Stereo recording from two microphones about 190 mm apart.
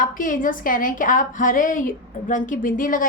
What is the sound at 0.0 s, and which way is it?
A woman's voice, 45° left (ahead or behind).